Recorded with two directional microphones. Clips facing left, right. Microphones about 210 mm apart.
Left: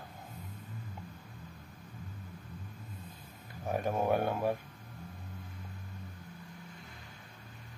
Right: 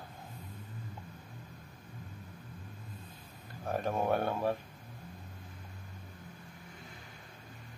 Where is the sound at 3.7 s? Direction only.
10° left (ahead or behind).